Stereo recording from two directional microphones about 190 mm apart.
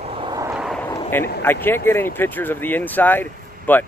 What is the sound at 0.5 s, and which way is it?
Artillery fire, centre (ahead or behind).